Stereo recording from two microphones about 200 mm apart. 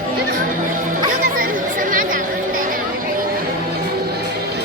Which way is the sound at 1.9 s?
45° right (ahead or behind).